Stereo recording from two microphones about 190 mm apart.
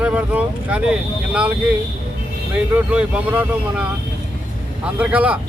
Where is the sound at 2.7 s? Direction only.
5° right (ahead or behind).